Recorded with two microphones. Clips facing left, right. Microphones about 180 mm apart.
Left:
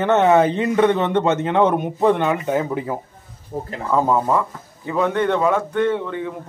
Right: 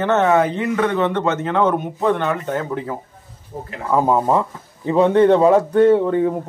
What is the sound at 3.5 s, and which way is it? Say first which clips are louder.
Speech: left 4 dB; 40° left (ahead or behind).